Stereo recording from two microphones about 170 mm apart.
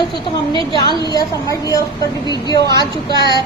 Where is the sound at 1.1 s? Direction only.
20° left (ahead or behind).